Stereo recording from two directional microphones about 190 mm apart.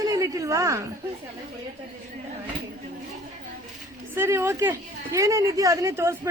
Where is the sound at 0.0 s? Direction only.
15° right (ahead or behind).